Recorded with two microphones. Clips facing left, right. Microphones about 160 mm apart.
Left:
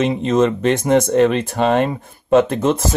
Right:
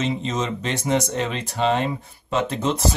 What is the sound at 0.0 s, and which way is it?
Speech, 55° left (ahead or behind).